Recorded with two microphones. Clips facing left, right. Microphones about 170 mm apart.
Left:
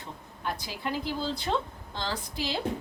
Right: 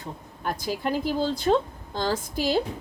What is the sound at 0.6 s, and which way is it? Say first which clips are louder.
Speech: right 10 dB; 50° right (ahead or behind).